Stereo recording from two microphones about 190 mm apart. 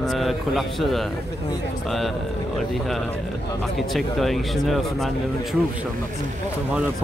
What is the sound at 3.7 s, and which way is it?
Speech, centre (ahead or behind).